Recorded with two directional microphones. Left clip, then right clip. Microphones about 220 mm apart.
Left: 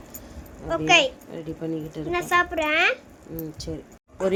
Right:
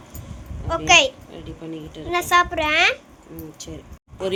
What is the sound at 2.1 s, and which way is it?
Speech, 5° right (ahead or behind).